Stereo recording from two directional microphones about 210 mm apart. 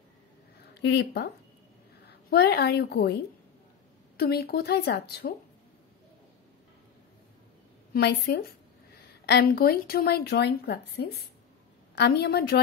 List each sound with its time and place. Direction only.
0.7 s a woman's voice: 50° left (ahead or behind)
4.2 s a woman's voice: 50° left (ahead or behind)
7.9 s a woman's voice: 50° left (ahead or behind)